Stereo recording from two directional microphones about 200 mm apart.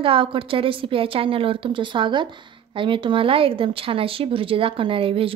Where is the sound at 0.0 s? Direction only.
25° right (ahead or behind).